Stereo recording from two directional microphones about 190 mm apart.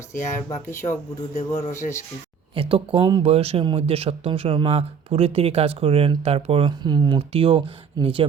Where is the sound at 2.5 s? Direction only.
30° right (ahead or behind).